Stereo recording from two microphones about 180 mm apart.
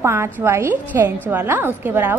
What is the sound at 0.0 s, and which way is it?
Speech, 15° right (ahead or behind).